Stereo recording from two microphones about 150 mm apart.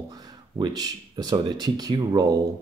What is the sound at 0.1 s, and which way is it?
Speech, 25° right (ahead or behind).